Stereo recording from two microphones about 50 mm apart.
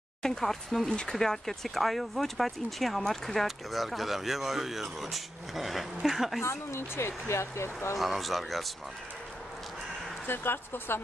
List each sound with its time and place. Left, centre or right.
0.2 s speech: centre
6.4 s speech: left
8.0 s speech: centre
10.2 s speech: left